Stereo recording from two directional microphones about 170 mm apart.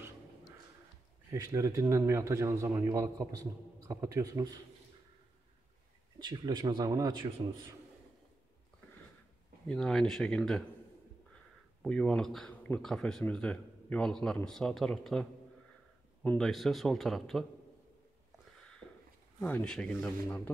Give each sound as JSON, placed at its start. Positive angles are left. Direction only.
{"t": 1.3, "sound": "a man's voice", "side_deg": -20}
{"t": 6.1, "sound": "a man's voice", "side_deg": -25}
{"t": 9.7, "sound": "speech", "side_deg": 5}
{"t": 11.8, "sound": "speech", "side_deg": 5}
{"t": 19.4, "sound": "a man's voice", "side_deg": 5}